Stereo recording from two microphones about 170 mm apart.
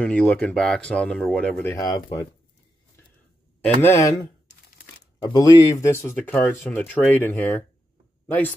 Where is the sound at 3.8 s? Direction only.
15° left (ahead or behind).